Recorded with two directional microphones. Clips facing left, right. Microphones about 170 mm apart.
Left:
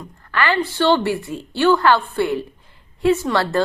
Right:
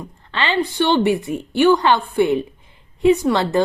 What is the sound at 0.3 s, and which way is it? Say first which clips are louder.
A woman's voice: even; 20° right (ahead or behind).